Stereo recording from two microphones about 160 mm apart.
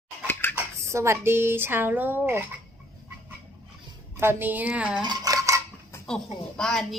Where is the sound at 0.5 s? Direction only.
15° right (ahead or behind).